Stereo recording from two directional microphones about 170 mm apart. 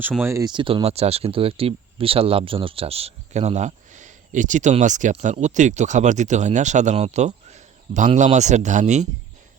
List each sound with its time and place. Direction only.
0.2 s speech: 15° right (ahead or behind); by 9.0 s 45° right (ahead or behind)